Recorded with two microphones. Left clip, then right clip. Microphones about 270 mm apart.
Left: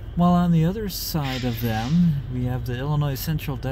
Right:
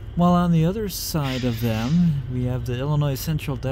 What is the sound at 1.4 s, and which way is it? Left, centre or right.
Speech, centre.